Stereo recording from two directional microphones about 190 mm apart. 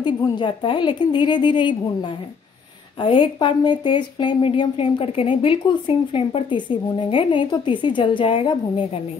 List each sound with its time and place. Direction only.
0.0 s speech: 25° left (ahead or behind)
3.0 s speech: 25° left (ahead or behind)